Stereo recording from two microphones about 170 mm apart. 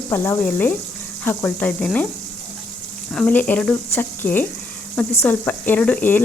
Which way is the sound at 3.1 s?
5° left (ahead or behind).